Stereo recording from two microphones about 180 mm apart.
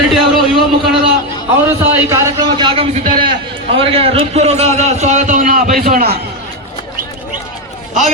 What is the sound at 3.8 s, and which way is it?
A man's voice, 30° right (ahead or behind).